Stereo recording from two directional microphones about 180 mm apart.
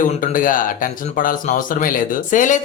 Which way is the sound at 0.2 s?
50° left (ahead or behind).